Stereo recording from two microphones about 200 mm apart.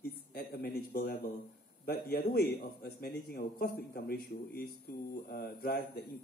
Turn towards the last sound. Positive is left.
turn(degrees=50)  # may be behind; listen again after turning